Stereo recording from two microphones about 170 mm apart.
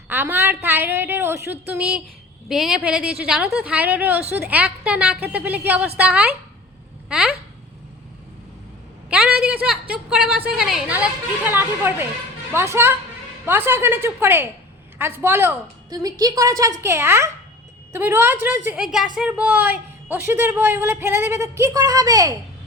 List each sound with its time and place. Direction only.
0.1 s a woman's voice: 10° right (ahead or behind)
9.0 s a sound: 5° right (ahead or behind)
12.5 s a woman's voice: 15° right (ahead or behind)